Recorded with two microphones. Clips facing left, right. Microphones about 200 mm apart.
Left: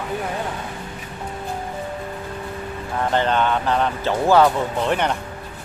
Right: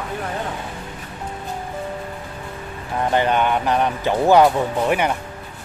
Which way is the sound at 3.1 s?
15° right (ahead or behind).